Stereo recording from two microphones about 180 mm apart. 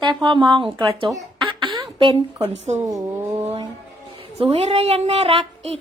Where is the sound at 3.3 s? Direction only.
35° right (ahead or behind).